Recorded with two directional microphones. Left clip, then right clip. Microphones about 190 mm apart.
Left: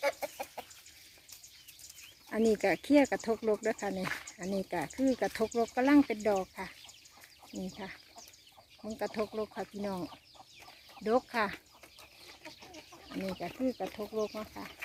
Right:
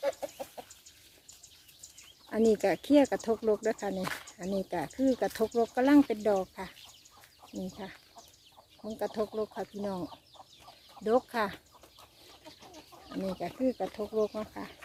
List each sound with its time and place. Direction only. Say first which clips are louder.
0.0 s chicken: even; 35° left (ahead or behind)
2.3 s speech: right 2 dB; 5° right (ahead or behind)
13.4 s speech: right 4 dB; 5° right (ahead or behind)